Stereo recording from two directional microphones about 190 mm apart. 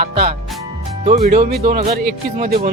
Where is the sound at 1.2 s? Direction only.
45° right (ahead or behind).